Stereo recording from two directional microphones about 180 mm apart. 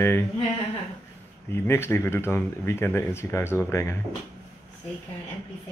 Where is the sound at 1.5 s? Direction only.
15° left (ahead or behind).